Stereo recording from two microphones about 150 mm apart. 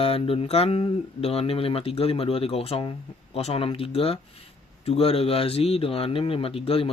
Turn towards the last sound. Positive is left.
turn(degrees=40)  # may be behind; listen again after turning